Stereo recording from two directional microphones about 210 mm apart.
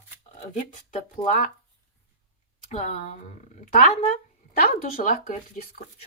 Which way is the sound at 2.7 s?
35° left (ahead or behind).